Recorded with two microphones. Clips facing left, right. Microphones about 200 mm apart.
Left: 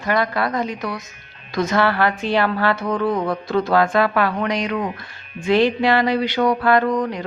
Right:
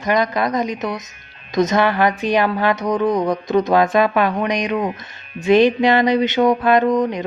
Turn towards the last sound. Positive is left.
turn(degrees=-20)  # may be behind; listen again after turning